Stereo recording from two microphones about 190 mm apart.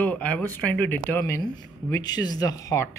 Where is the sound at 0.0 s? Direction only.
5° left (ahead or behind).